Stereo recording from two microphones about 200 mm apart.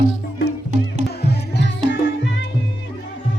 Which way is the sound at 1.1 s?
55° left (ahead or behind).